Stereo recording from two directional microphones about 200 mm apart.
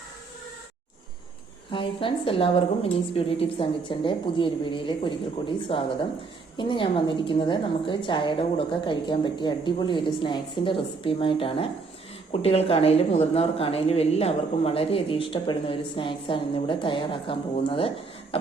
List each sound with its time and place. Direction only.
1.7 s speech: 25° left (ahead or behind)